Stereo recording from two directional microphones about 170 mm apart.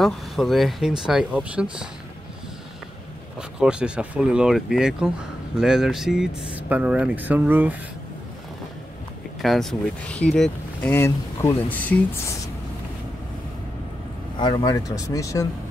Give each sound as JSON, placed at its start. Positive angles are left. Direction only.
{"t": 0.0, "sound": "speech", "side_deg": 0}
{"t": 3.3, "sound": "speech", "side_deg": -5}
{"t": 9.4, "sound": "speech", "side_deg": 0}
{"t": 14.4, "sound": "speech", "side_deg": 25}